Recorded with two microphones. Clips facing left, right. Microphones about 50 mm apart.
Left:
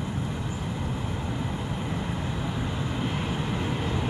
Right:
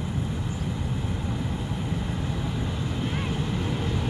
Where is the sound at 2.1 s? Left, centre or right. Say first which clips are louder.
Even; centre.